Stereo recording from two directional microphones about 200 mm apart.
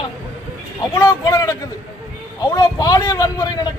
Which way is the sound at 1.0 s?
15° left (ahead or behind).